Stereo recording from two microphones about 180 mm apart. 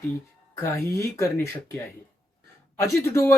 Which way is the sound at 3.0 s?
15° left (ahead or behind).